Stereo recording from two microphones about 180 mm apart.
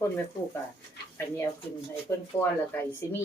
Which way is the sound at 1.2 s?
15° left (ahead or behind).